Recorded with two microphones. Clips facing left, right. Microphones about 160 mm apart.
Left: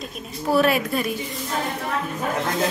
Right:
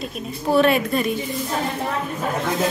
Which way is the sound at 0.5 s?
5° left (ahead or behind).